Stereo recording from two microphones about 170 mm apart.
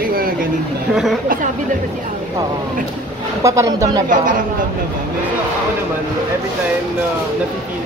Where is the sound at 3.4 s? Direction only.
20° right (ahead or behind).